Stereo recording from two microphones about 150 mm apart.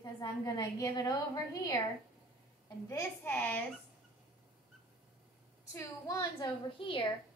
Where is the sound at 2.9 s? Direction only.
15° left (ahead or behind).